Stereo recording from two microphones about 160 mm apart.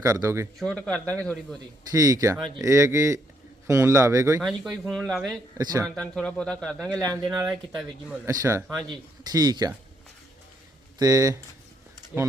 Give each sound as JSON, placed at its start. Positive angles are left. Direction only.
{"t": 0.0, "sound": "speech", "side_deg": -20}
{"t": 0.6, "sound": "a man's voice", "side_deg": 5}
{"t": 1.9, "sound": "a man's voice", "side_deg": -20}
{"t": 4.4, "sound": "speech", "side_deg": 0}
{"t": 5.5, "sound": "speech", "side_deg": -25}
{"t": 5.8, "sound": "speech", "side_deg": 5}
{"t": 8.3, "sound": "speech", "side_deg": -20}
{"t": 8.6, "sound": "speech", "side_deg": 0}
{"t": 9.2, "sound": "speech", "side_deg": -25}
{"t": 10.9, "sound": "speech", "side_deg": -20}